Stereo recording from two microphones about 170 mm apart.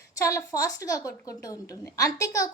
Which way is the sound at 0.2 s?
20° left (ahead or behind).